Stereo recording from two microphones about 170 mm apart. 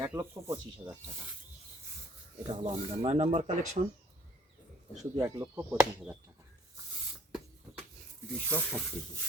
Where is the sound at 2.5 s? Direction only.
35° right (ahead or behind).